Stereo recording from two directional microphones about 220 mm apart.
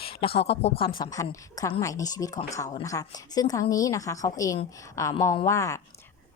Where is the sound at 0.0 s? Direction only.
25° left (ahead or behind).